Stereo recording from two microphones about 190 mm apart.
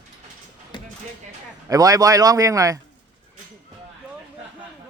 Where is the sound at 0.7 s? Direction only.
25° left (ahead or behind).